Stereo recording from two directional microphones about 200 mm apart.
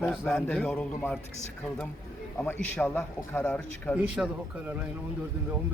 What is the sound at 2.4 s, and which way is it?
A man's voice, 5° left (ahead or behind).